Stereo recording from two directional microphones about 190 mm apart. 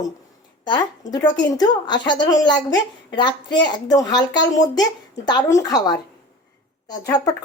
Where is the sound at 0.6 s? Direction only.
20° left (ahead or behind).